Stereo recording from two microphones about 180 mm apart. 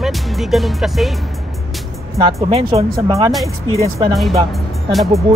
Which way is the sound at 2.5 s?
30° right (ahead or behind).